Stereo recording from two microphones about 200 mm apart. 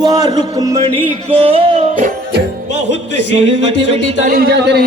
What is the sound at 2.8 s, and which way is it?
Speech, 60° left (ahead or behind).